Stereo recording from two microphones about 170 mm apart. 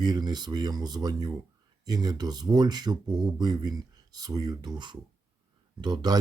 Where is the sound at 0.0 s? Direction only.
25° right (ahead or behind).